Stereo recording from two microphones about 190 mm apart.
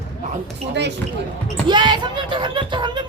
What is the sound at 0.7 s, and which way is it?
Speech, 65° right (ahead or behind).